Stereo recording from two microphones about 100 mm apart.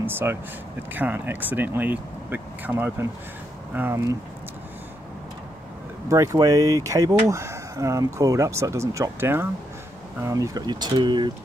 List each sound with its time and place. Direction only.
0.0 s speech: 20° right (ahead or behind)
6.0 s speech: 30° right (ahead or behind); by 11.2 s 50° right (ahead or behind)